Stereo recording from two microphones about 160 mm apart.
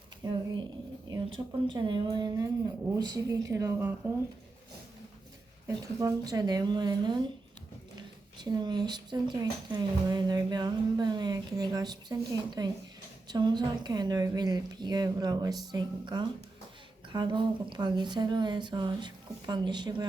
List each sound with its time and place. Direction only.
0.2 s speech: 25° right (ahead or behind)
5.6 s speech: 20° right (ahead or behind)